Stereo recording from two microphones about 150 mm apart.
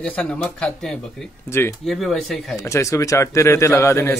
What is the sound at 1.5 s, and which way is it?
Speech, 15° left (ahead or behind).